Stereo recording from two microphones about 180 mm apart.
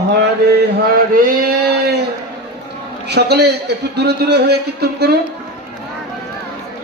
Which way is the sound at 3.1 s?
65° right (ahead or behind).